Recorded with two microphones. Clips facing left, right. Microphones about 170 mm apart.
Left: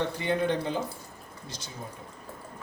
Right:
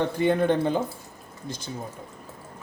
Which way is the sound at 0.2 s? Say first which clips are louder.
Right 9 dB; 50° right (ahead or behind).